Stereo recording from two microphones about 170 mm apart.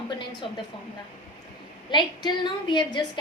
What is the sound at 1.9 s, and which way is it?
A woman's voice, 25° left (ahead or behind).